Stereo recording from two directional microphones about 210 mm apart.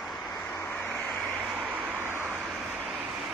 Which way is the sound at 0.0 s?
Centre (ahead or behind).